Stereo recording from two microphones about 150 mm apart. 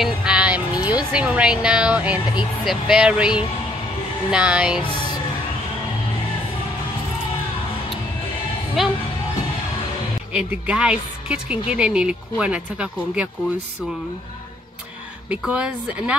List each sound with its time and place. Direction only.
0.0 s music: 5° right (ahead or behind)
1.1 s speech: 5° right (ahead or behind)
8.8 s speech: centre (ahead or behind)
10.3 s speech: 10° right (ahead or behind)
15.2 s speech: 5° right (ahead or behind)